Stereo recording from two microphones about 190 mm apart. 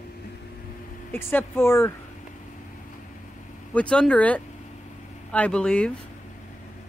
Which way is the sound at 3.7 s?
5° left (ahead or behind).